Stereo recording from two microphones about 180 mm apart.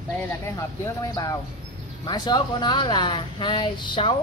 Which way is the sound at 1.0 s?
20° left (ahead or behind).